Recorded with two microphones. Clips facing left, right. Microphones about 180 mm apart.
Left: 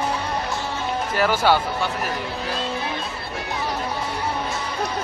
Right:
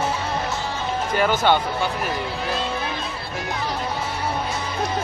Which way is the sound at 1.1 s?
5° left (ahead or behind).